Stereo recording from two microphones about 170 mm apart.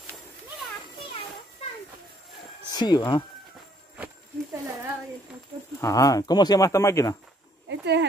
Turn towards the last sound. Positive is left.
turn(degrees=-90)